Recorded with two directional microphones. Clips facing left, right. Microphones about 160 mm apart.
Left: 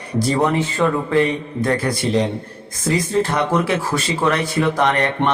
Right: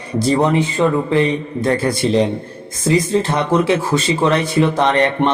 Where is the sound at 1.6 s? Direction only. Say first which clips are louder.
Right 2 dB; 25° right (ahead or behind).